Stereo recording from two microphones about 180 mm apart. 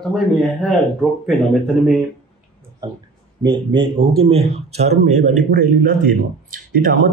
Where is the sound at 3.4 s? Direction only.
25° right (ahead or behind); by 5.4 s 40° right (ahead or behind).